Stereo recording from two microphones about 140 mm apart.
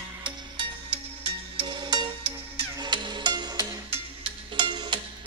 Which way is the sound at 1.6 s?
30° right (ahead or behind).